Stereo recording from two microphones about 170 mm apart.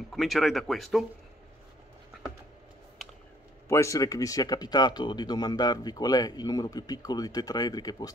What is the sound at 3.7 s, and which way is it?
Speech, 20° left (ahead or behind).